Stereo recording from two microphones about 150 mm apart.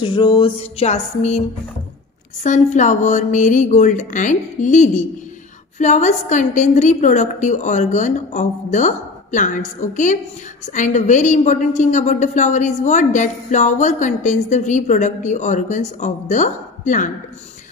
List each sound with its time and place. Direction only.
0.0 s music: 30° left (ahead or behind); by 1.4 s 50° left (ahead or behind)
2.4 s a woman's voice: 55° left (ahead or behind)